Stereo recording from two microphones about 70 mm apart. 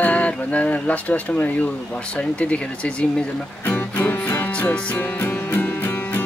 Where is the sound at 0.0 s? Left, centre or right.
Centre.